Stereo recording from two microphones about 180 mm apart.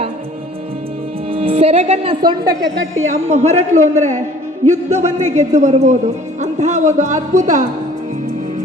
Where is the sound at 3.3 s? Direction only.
40° right (ahead or behind).